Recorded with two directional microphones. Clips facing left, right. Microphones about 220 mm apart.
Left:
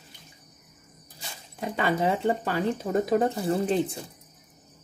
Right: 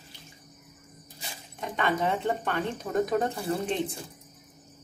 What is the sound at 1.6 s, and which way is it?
Speech, 30° left (ahead or behind).